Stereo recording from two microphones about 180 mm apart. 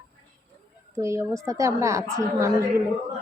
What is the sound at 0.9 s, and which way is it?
A woman's voice, 15° right (ahead or behind).